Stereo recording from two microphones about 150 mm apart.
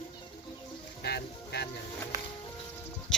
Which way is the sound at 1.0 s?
90° left.